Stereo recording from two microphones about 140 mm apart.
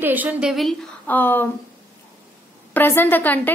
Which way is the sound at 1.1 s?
15° left (ahead or behind).